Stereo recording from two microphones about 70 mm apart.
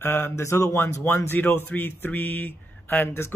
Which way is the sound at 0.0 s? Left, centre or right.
Left.